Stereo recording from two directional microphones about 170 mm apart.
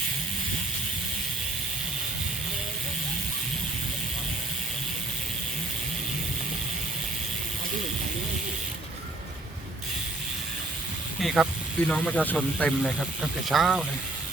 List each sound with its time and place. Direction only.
11.2 s speech: centre (ahead or behind)